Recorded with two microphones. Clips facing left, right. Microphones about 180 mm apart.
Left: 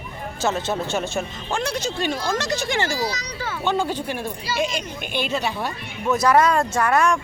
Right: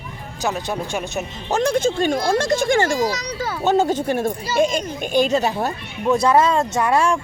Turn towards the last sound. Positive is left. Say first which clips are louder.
# right 1 dB
turn(degrees=-30)  # may be behind; listen again after turning